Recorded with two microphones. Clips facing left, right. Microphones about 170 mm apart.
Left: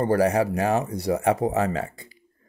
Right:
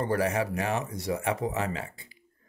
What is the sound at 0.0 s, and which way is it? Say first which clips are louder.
Speech: left 7 dB; 35° left (ahead or behind).